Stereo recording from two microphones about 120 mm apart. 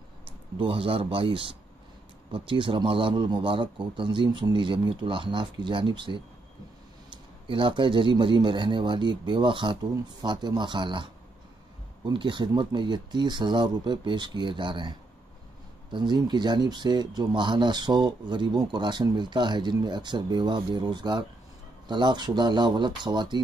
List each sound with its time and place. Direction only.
0.6 s speech: 50° right (ahead or behind)